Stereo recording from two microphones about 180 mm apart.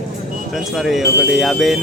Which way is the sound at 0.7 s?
Centre (ahead or behind).